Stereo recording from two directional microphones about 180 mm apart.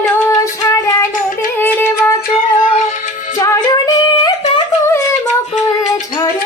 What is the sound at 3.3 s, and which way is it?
Music, 20° left (ahead or behind).